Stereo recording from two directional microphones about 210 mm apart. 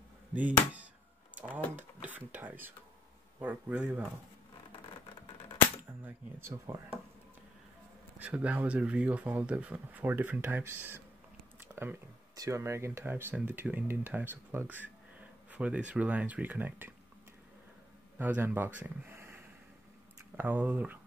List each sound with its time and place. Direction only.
0.3 s speech: 5° right (ahead or behind)
6.0 s speech: 10° right (ahead or behind)
8.2 s speech: 5° right (ahead or behind)
11.7 s speech: 10° right (ahead or behind)
18.1 s speech: 10° right (ahead or behind)